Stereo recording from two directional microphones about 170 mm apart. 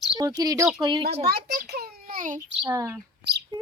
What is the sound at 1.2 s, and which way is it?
A child's voice, 70° right (ahead or behind).